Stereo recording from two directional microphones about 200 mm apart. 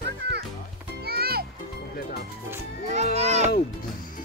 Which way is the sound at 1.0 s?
50° right (ahead or behind).